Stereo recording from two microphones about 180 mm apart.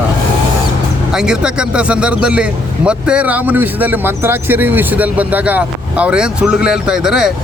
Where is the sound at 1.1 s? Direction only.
5° right (ahead or behind).